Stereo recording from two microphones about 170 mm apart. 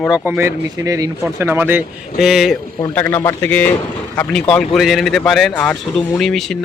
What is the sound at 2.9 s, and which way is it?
Speech, 10° left (ahead or behind).